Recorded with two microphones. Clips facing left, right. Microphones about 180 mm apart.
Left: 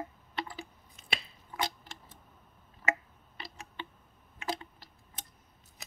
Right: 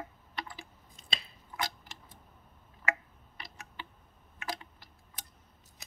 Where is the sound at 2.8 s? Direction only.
25° left (ahead or behind).